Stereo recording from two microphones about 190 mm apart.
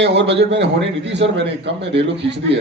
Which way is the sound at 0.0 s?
65° right (ahead or behind).